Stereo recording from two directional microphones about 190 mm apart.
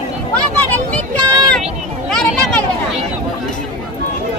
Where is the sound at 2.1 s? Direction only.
5° left (ahead or behind).